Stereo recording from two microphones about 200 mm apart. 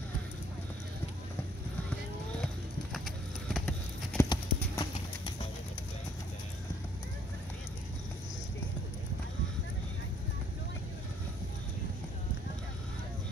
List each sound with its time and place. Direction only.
3.4 s vehicle: centre (ahead or behind)
4.2 s clip-clop: 20° left (ahead or behind)